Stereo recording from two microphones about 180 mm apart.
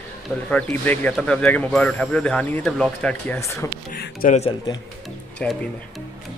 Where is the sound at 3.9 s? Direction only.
55° left (ahead or behind).